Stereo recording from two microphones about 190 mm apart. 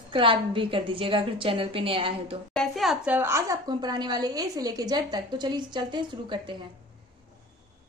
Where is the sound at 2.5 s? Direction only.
Centre (ahead or behind); by 6.6 s 25° right (ahead or behind).